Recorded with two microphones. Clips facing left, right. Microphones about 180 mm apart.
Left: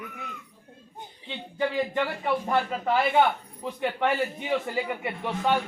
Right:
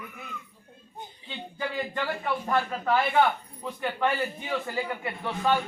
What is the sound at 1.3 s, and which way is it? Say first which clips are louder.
A man's voice: left 5 dB; 20° left (ahead or behind).